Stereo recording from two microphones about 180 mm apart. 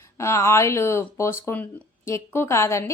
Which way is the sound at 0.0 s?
15° left (ahead or behind).